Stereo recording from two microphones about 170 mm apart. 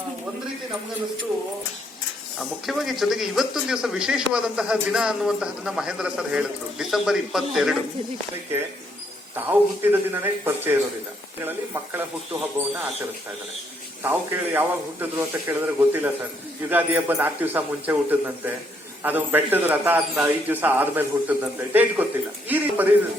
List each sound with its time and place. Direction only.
2.6 s a man's voice: centre (ahead or behind)
9.3 s speech: 10° right (ahead or behind)
14.0 s speech: 10° right (ahead or behind)